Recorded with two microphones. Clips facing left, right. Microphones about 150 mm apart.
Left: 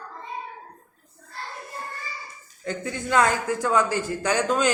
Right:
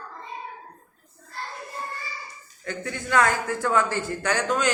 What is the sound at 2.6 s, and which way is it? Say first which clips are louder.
Speech: left 2 dB; 20° left (ahead or behind).